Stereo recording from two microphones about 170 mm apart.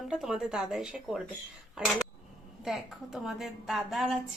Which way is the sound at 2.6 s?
Centre (ahead or behind).